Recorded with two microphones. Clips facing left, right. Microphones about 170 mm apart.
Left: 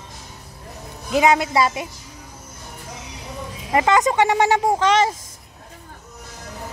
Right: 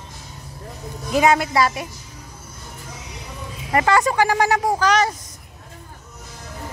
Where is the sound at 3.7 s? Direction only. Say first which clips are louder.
Left 1 dB; 15° left (ahead or behind).